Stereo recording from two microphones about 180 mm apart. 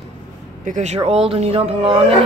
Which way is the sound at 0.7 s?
40° right (ahead or behind).